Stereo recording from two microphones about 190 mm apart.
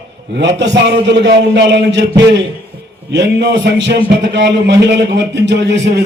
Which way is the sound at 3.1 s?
65° right (ahead or behind).